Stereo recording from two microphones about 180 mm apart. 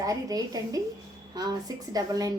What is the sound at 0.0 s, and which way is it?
A woman's voice, 20° right (ahead or behind).